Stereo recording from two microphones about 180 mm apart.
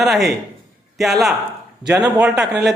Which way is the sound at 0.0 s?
Centre (ahead or behind).